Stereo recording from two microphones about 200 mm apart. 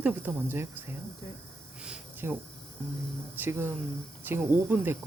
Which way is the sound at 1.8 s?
5° right (ahead or behind).